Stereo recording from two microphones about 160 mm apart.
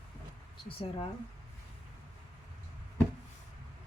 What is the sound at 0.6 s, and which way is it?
Speech, 35° left (ahead or behind).